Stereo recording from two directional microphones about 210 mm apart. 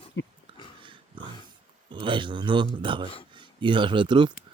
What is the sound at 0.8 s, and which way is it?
Pig, 25° right (ahead or behind).